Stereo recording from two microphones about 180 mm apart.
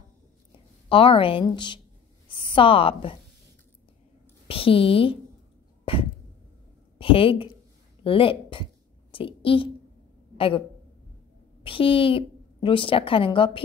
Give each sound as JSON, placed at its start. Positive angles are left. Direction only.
{"t": 0.5, "sound": "a woman's voice", "side_deg": 30}
{"t": 4.5, "sound": "speech", "side_deg": 30}
{"t": 5.9, "sound": "a sound", "side_deg": 30}
{"t": 7.0, "sound": "a woman's voice", "side_deg": 30}
{"t": 11.6, "sound": "a woman's voice", "side_deg": 30}